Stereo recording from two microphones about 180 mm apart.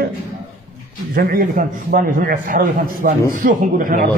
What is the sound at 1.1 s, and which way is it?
A man's voice, 50° right (ahead or behind).